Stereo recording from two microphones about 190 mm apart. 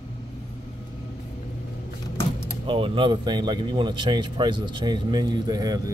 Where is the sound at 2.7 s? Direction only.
25° right (ahead or behind).